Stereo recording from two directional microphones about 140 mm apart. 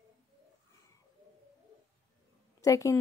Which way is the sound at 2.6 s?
25° left (ahead or behind).